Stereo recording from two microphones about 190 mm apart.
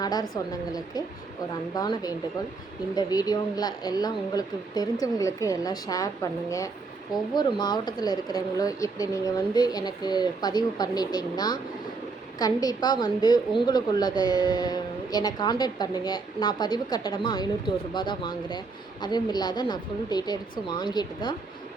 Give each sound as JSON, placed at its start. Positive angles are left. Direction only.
{"t": 0.0, "sound": "speech", "side_deg": 20}
{"t": 7.3, "sound": "speech", "side_deg": 25}